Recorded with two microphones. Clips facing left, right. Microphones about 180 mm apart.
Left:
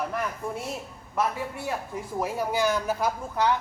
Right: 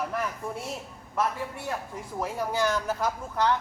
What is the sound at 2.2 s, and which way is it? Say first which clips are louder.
Speech: left 1 dB; 10° left (ahead or behind).